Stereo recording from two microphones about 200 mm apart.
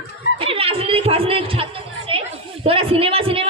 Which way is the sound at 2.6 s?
30° right (ahead or behind).